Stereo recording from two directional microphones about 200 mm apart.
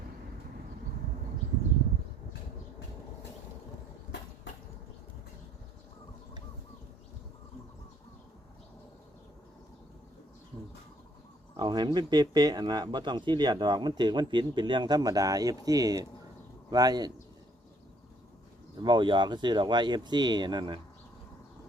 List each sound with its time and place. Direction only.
11.5 s speech: 20° right (ahead or behind)
18.8 s speech: 20° right (ahead or behind)